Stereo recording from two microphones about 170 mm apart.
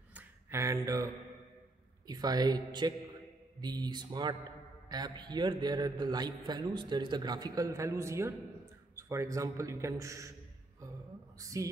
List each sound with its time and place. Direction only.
0.1 s finger snapping: 15° right (ahead or behind)
2.0 s a man's voice: 25° right (ahead or behind)
11.3 s a man's voice: 20° right (ahead or behind)